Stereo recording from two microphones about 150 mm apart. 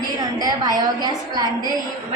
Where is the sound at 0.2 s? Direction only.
25° right (ahead or behind).